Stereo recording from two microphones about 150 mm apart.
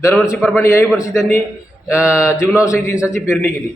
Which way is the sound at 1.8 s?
20° left (ahead or behind).